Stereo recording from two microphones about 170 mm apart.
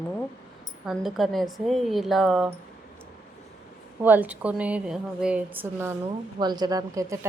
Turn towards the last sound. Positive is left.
turn(degrees=-20)  # may be behind; listen again after turning